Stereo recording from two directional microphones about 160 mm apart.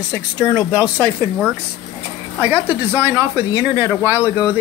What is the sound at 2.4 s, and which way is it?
Speech, 15° right (ahead or behind).